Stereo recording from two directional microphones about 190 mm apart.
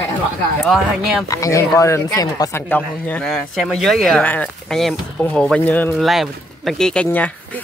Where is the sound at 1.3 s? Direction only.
15° left (ahead or behind).